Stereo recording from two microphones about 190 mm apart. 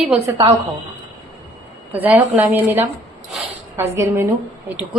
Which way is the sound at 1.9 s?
10° right (ahead or behind).